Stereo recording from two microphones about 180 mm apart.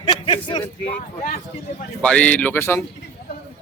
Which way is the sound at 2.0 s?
5° left (ahead or behind).